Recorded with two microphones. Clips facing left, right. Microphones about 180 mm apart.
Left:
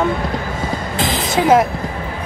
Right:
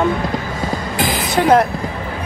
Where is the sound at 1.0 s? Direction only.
20° left (ahead or behind).